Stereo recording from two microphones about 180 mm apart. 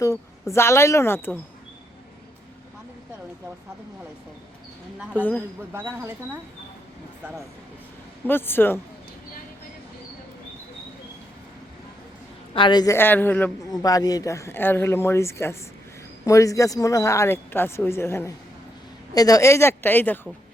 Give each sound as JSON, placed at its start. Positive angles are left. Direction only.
{"t": 0.0, "sound": "a man's voice", "side_deg": 15}
{"t": 5.7, "sound": "speech", "side_deg": -15}
{"t": 8.3, "sound": "a man's voice", "side_deg": 10}
{"t": 12.5, "sound": "a man's voice", "side_deg": 25}
{"t": 13.7, "sound": "a man's voice", "side_deg": 20}